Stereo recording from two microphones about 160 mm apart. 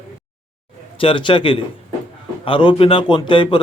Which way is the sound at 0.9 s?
30° left (ahead or behind).